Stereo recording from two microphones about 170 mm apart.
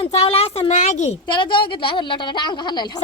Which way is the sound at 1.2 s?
30° left (ahead or behind).